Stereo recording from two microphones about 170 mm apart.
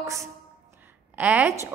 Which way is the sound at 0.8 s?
10° right (ahead or behind).